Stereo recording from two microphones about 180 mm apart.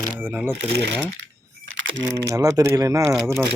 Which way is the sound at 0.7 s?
70° right (ahead or behind).